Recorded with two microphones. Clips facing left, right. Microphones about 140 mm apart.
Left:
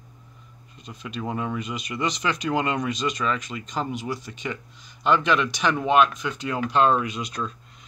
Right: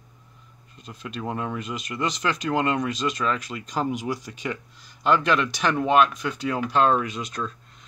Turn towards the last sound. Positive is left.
turn(degrees=0)  # may be behind; listen again after turning